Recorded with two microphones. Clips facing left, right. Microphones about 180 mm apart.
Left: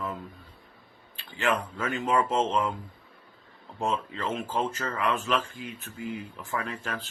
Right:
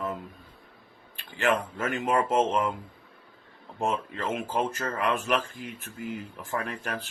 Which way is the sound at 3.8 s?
15° right (ahead or behind).